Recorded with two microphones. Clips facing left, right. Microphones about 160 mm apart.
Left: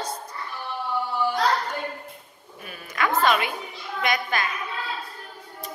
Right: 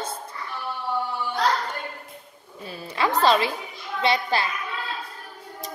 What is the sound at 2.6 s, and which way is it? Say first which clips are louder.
A woman's voice: right 2 dB; 30° right (ahead or behind).